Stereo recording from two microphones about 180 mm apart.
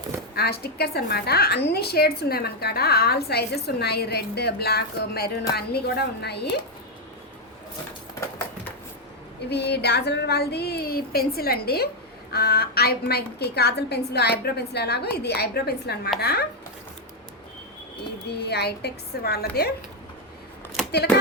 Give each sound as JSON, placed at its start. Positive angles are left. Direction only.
{"t": 0.3, "sound": "a woman's voice", "side_deg": 60}
{"t": 9.5, "sound": "a woman's voice", "side_deg": 65}
{"t": 18.3, "sound": "a woman's voice", "side_deg": 65}